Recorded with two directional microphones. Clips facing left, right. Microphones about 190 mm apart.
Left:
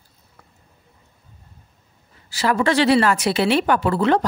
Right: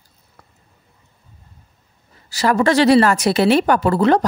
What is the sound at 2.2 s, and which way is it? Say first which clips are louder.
A woman's voice: right 3 dB; 40° right (ahead or behind).